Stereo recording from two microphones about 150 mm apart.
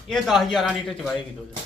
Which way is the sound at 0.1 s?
Centre (ahead or behind).